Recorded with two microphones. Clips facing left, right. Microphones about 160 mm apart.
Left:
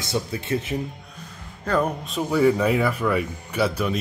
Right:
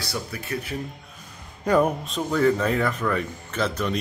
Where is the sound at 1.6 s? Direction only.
10° right (ahead or behind).